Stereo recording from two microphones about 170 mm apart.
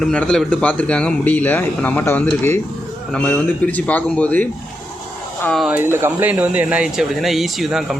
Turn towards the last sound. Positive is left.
turn(degrees=0)  # may be behind; listen again after turning